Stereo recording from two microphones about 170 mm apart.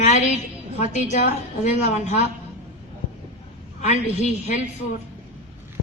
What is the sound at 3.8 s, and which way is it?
Speech, 40° left (ahead or behind).